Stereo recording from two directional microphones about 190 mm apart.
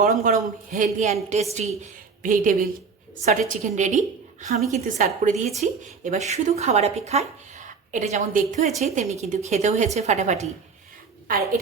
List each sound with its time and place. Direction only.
0.0 s a woman's voice: 45° right (ahead or behind)